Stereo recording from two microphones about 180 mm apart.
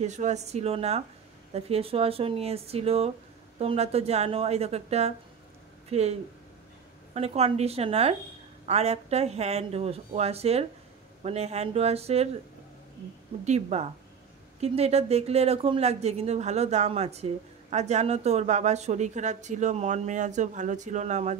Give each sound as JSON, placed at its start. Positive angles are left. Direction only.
{"t": 0.0, "sound": "speech", "side_deg": -40}
{"t": 7.2, "sound": "speech", "side_deg": -35}
{"t": 13.5, "sound": "speech", "side_deg": -35}